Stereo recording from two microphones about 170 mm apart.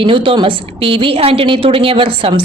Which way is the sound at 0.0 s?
30° right (ahead or behind).